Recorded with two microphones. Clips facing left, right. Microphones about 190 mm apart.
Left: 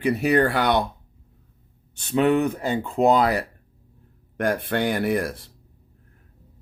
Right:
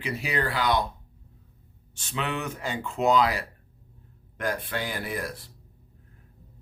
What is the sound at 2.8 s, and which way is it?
Speech, 35° left (ahead or behind).